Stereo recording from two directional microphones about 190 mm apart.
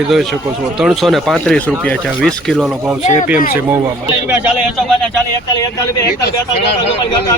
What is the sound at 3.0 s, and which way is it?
Speech, 40° left (ahead or behind).